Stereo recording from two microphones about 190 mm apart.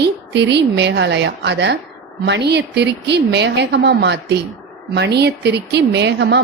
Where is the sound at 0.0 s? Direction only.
65° right (ahead or behind).